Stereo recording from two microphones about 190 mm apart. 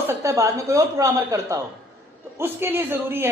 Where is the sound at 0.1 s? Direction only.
15° right (ahead or behind).